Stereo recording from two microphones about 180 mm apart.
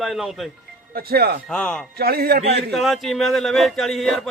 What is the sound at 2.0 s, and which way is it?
Speech, 60° right (ahead or behind).